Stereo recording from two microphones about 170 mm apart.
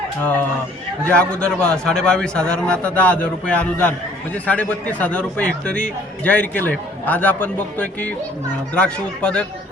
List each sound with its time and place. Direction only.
1.0 s a man's voice: 5° left (ahead or behind)